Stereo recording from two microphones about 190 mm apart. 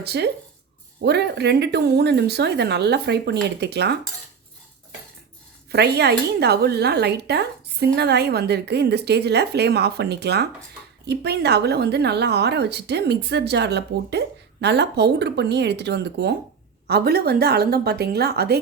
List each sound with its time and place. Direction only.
0.0 s a woman's voice: 60° right (ahead or behind)
5.7 s a woman's voice: 60° right (ahead or behind)